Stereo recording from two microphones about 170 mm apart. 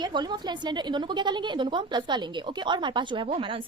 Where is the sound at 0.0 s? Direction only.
25° right (ahead or behind).